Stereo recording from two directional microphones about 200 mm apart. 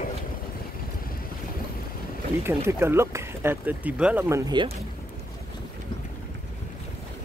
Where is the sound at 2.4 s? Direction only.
10° right (ahead or behind).